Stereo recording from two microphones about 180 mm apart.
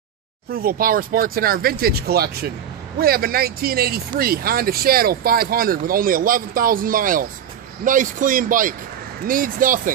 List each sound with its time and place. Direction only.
0.5 s speech: 55° right (ahead or behind)